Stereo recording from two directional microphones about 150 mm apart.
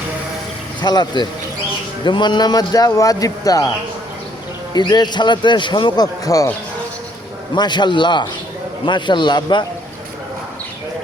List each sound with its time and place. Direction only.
0.8 s speech: 30° left (ahead or behind)
4.7 s speech: 30° left (ahead or behind)
7.5 s a man's voice: 30° left (ahead or behind)